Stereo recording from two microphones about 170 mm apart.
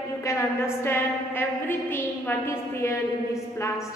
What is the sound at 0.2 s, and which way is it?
A woman's voice, 15° left (ahead or behind).